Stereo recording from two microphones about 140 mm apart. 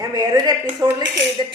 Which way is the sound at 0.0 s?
25° right (ahead or behind).